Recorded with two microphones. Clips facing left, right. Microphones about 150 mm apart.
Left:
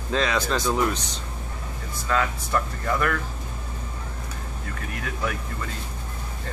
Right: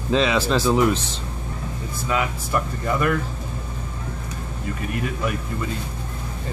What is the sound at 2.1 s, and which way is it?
Speech, 15° right (ahead or behind).